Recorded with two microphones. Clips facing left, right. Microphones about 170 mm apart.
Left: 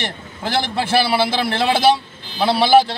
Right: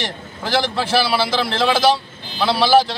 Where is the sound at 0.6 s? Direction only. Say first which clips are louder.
Even; 55° left (ahead or behind).